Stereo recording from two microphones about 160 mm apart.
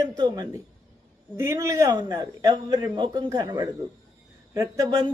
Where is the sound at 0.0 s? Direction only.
25° right (ahead or behind).